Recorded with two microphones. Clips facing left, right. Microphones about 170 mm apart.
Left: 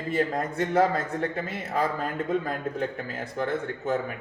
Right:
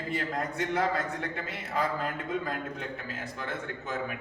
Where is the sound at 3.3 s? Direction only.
50° left (ahead or behind).